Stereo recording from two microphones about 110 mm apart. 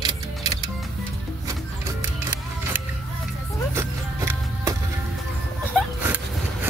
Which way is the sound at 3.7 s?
25° right (ahead or behind).